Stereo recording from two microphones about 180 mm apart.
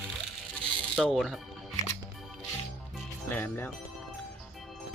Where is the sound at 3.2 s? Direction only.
10° left (ahead or behind).